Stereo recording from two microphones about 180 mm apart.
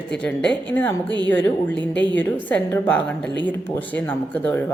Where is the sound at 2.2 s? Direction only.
10° left (ahead or behind).